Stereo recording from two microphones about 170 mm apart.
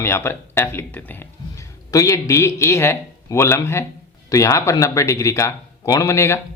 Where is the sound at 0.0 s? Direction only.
15° left (ahead or behind).